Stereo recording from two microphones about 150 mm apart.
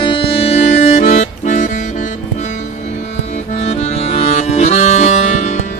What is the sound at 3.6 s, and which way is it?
Music, 45° left (ahead or behind).